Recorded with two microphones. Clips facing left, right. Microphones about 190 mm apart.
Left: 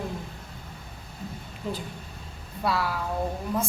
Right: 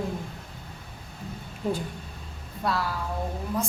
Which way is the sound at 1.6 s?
40° right (ahead or behind).